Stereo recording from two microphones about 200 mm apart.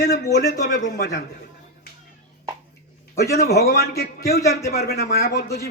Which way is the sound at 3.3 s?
50° left (ahead or behind).